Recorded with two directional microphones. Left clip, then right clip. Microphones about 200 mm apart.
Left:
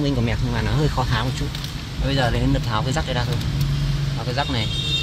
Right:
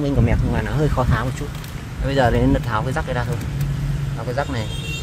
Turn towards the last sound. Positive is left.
turn(degrees=-15)  # may be behind; listen again after turning